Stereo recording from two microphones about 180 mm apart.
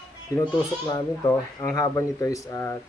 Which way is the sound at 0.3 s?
20° left (ahead or behind).